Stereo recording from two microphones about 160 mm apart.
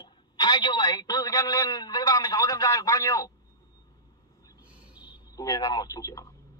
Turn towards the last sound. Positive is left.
turn(degrees=20)  # may be behind; listen again after turning